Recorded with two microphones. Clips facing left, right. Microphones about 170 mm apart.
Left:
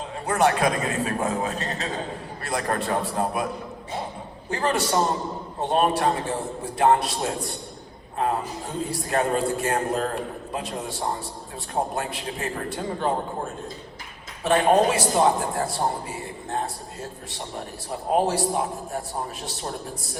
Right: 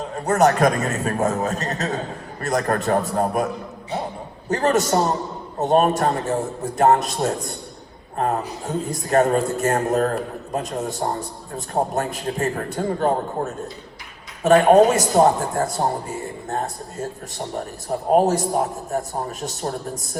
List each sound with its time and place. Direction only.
0.3 s a man's voice: 40° right (ahead or behind)